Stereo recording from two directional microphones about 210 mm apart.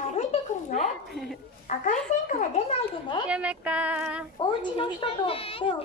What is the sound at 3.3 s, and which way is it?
Speech, 5° right (ahead or behind).